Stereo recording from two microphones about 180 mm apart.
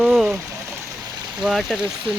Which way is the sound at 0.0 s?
5° right (ahead or behind).